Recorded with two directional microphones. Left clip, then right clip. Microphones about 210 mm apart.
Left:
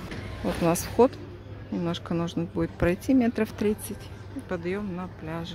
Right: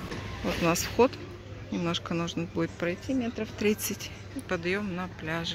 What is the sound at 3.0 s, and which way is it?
Speech, 35° left (ahead or behind).